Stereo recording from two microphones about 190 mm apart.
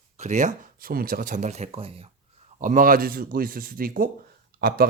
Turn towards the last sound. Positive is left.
turn(degrees=-55)  # may be behind; listen again after turning